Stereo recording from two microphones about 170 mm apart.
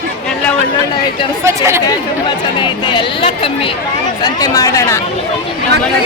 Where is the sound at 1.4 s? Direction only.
15° right (ahead or behind).